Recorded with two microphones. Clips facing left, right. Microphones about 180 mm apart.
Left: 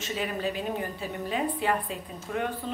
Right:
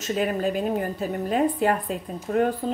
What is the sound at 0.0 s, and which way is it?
A woman's voice, 45° right (ahead or behind).